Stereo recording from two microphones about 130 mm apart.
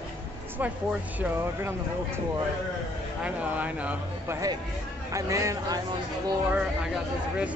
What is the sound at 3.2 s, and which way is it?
Speech, 10° right (ahead or behind).